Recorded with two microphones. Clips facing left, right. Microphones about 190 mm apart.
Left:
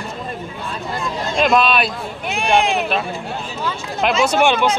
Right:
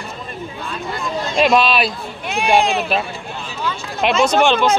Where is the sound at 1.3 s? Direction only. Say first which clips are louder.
Right 1 dB; centre (ahead or behind).